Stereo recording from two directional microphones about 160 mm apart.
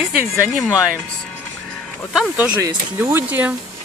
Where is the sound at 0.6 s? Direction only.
20° left (ahead or behind).